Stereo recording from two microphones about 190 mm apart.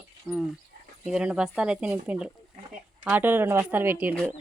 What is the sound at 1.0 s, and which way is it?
Speech, 5° right (ahead or behind).